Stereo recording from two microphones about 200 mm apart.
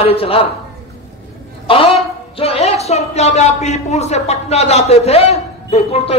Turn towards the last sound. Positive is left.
turn(degrees=30)  # may be behind; listen again after turning